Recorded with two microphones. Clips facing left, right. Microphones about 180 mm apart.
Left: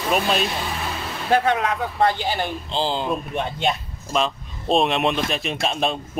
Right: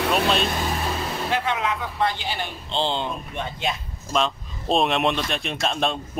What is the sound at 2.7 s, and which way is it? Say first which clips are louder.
Speech: right 1 dB; 5° left (ahead or behind).